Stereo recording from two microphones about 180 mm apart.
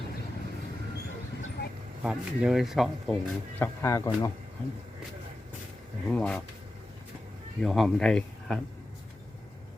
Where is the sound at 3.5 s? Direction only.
15° left (ahead or behind).